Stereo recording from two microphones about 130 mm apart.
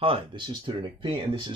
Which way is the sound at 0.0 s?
40° right (ahead or behind).